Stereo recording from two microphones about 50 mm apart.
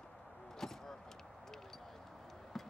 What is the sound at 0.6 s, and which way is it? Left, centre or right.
Vehicle, centre.